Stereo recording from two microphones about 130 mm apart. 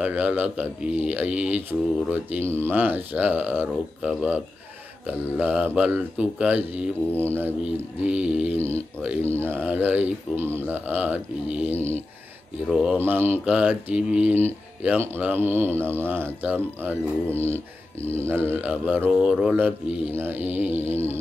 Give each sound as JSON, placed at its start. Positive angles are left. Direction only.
{"t": 0.0, "sound": "a man's voice", "side_deg": -10}
{"t": 5.4, "sound": "a man's voice", "side_deg": -10}
{"t": 18.0, "sound": "a man's voice", "side_deg": -20}